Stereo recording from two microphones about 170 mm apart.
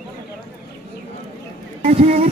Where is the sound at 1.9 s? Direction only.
40° right (ahead or behind).